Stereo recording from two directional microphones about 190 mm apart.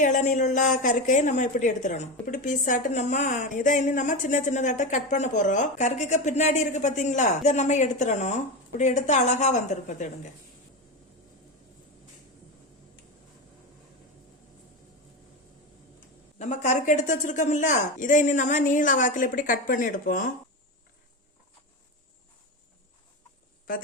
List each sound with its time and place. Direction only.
0.0 s a woman's voice: 40° left (ahead or behind)
16.4 s a woman's voice: 40° left (ahead or behind)